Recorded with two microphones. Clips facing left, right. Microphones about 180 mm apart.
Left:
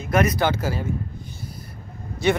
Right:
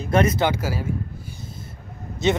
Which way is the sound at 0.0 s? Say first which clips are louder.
Right 1 dB; 30° right (ahead or behind).